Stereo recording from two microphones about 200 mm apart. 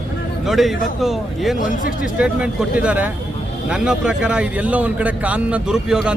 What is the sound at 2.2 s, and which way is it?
A man's voice, 5° right (ahead or behind).